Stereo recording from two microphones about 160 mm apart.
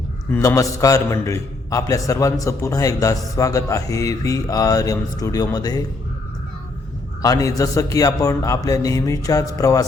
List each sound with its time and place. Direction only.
0.3 s a man's voice: 20° left (ahead or behind)
7.2 s a man's voice: 20° left (ahead or behind)